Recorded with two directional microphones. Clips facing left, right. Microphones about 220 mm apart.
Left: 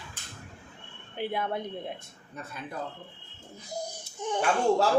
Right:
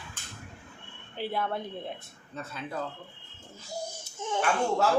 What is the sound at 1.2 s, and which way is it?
Speech, 20° left (ahead or behind).